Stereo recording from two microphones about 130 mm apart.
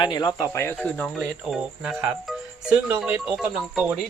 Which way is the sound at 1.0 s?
Centre (ahead or behind).